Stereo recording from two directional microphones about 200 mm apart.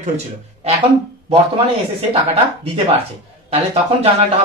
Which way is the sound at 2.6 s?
30° right (ahead or behind).